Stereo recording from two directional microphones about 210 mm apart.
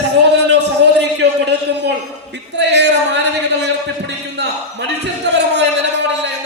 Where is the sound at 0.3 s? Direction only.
55° right (ahead or behind).